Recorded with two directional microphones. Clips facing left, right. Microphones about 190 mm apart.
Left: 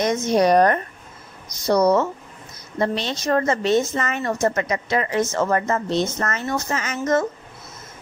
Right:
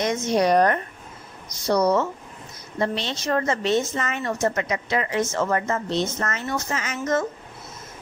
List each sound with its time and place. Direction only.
0.0 s a woman's voice: 45° left (ahead or behind)